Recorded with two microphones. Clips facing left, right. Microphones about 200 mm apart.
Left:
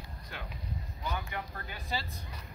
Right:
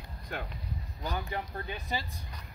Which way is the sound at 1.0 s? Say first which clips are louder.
Right 3 dB; 35° right (ahead or behind).